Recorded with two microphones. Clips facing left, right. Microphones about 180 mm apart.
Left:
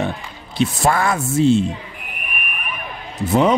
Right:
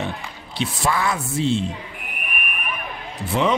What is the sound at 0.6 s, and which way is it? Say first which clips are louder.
Speech: left 5 dB; 50° left (ahead or behind).